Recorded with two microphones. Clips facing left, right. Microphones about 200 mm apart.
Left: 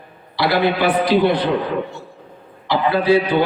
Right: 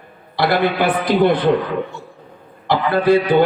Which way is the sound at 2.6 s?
50° right (ahead or behind).